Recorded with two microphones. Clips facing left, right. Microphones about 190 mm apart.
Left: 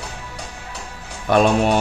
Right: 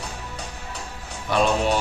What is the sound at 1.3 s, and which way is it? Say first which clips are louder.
Speech: left 6 dB; 55° left (ahead or behind).